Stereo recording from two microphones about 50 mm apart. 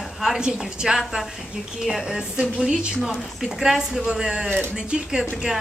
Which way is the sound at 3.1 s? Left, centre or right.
Centre.